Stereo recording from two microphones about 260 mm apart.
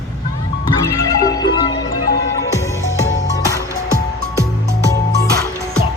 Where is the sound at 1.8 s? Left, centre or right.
Left.